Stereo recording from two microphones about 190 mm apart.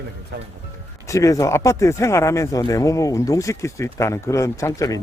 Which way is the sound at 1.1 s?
15° left (ahead or behind).